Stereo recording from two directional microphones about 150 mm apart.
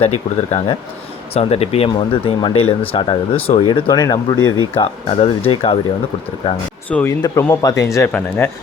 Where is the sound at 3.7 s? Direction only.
30° left (ahead or behind).